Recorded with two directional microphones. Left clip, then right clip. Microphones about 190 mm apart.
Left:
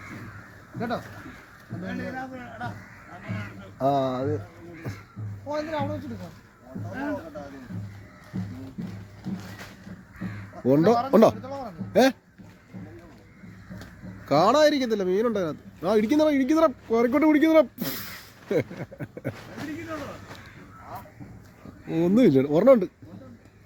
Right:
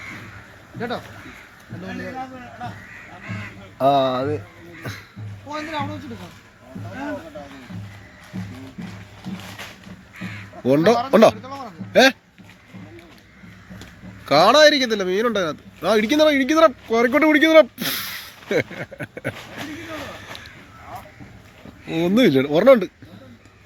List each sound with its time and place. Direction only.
3.8 s speech: 10° right (ahead or behind)
4.9 s speech: 5° left (ahead or behind)
5.5 s speech: 60° left (ahead or behind)
8.3 s music: 25° right (ahead or behind)
10.6 s speech: 5° left (ahead or behind)
14.3 s speech: 5° left (ahead or behind)
22.0 s speech: 5° left (ahead or behind)